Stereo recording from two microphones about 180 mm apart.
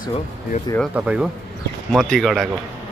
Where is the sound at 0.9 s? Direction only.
5° right (ahead or behind).